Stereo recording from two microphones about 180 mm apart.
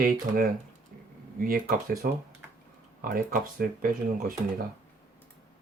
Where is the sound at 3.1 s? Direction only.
55° right (ahead or behind).